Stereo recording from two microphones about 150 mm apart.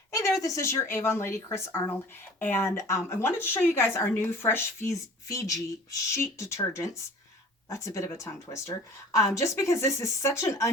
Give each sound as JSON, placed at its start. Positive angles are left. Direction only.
{"t": 0.1, "sound": "speech", "side_deg": 20}